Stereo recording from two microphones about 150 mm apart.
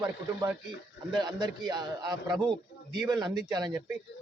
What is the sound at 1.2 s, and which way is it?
A man's voice, 30° right (ahead or behind).